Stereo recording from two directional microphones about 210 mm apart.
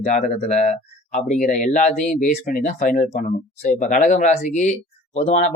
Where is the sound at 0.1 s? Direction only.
35° left (ahead or behind).